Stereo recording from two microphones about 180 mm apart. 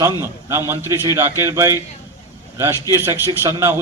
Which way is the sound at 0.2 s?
15° right (ahead or behind).